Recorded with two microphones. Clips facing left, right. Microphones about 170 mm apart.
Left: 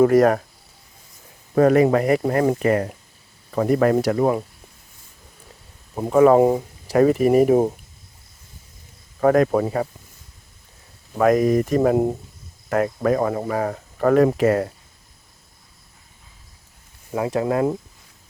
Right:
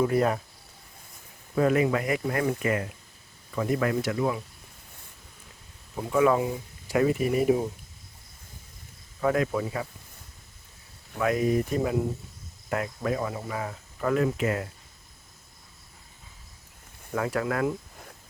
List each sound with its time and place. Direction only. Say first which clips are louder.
0.0 s speech: left 9 dB; 75° left (ahead or behind)
1.5 s speech: left 8 dB; 45° left (ahead or behind)
5.9 s speech: left 8 dB; 45° left (ahead or behind)
6.8 s speech: left 8 dB; 40° left (ahead or behind)
9.2 s speech: left 9 dB; 50° left (ahead or behind)
11.2 s speech: left 8 dB; 45° left (ahead or behind)
17.1 s speech: left 6 dB; 20° left (ahead or behind)